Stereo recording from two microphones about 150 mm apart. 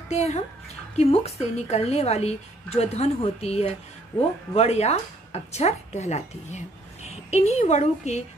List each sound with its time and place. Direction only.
0.1 s a woman's voice: 45° left (ahead or behind)